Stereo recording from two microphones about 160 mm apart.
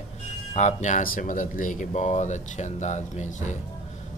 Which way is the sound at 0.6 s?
45° left (ahead or behind).